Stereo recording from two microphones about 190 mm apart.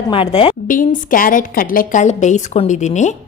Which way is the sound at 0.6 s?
45° left (ahead or behind).